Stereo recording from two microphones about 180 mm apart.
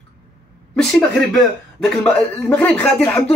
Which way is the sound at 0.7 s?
Centre (ahead or behind).